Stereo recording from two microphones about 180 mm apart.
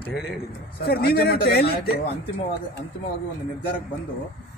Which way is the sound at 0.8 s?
55° left (ahead or behind).